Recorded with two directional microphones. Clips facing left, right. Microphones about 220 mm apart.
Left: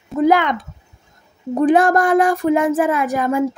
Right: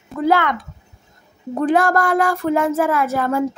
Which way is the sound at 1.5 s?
20° left (ahead or behind).